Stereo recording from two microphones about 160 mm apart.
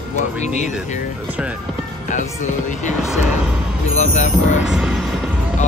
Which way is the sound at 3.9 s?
45° left (ahead or behind).